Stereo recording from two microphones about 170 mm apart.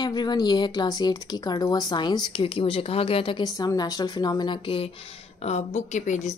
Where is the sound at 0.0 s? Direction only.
25° left (ahead or behind).